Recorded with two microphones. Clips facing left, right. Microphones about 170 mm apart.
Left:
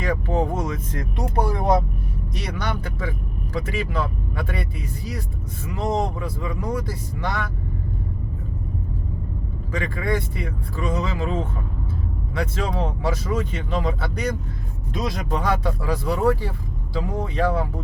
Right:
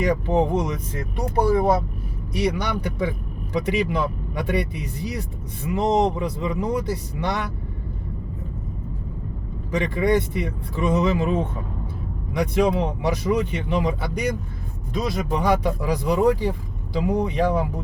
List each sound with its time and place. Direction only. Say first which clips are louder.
0.0 s speech: right 3 dB; 15° right (ahead or behind)
0.9 s speech: right 2 dB; 5° right (ahead or behind); by 7.4 s 20° right (ahead or behind)
9.7 s speech: right 5 dB; 20° right (ahead or behind)
14.9 s speech: right 2 dB; centre (ahead or behind)
15.3 s speech: right 3 dB; 15° right (ahead or behind)